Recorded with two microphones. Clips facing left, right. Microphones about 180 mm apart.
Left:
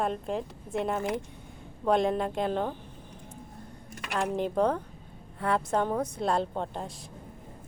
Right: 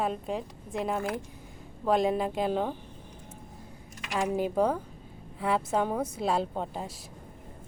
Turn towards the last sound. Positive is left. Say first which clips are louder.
# even
turn(degrees=-5)  # may be behind; listen again after turning